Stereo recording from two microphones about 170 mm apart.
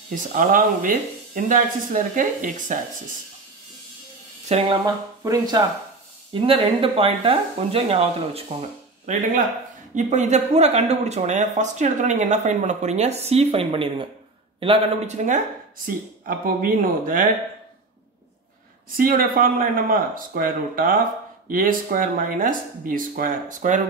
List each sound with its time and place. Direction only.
0.1 s speech: 50° right (ahead or behind)
4.5 s speech: 35° right (ahead or behind)
5.2 s speech: 20° right (ahead or behind)
6.3 s speech: 30° right (ahead or behind)
15.2 s speech: 50° right (ahead or behind)
18.9 s speech: 55° right (ahead or behind)